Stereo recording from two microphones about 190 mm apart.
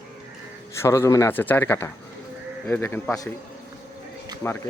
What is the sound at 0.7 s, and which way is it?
Speech, 15° left (ahead or behind).